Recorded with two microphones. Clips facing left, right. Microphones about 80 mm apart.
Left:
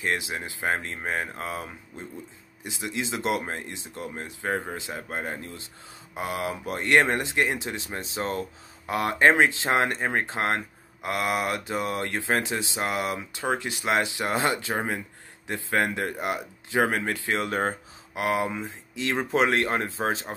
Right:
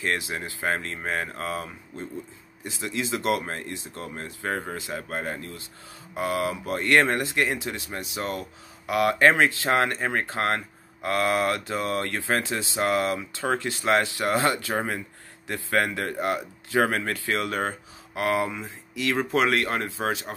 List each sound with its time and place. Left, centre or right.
0.0 s speech: centre